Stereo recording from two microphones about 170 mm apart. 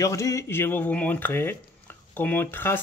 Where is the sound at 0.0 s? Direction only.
15° left (ahead or behind).